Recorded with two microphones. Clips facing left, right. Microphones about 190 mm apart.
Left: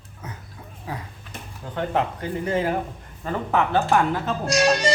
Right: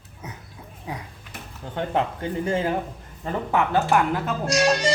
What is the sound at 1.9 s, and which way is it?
Speech, 30° right (ahead or behind).